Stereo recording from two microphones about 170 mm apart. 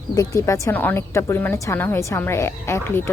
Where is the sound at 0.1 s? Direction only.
20° left (ahead or behind).